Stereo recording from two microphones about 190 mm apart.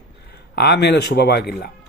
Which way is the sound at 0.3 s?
55° left (ahead or behind).